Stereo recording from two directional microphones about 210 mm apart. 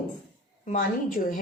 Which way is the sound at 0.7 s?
40° left (ahead or behind).